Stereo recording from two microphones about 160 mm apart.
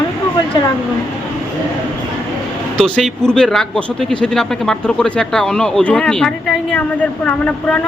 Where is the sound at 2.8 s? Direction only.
5° left (ahead or behind).